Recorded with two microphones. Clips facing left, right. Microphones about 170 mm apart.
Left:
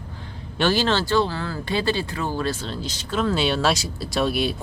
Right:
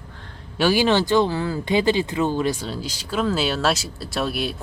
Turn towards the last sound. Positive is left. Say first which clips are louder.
# left 3 dB
turn(degrees=0)  # may be behind; listen again after turning